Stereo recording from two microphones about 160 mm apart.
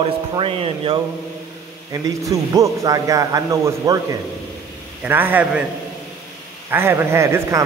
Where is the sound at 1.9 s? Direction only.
20° right (ahead or behind).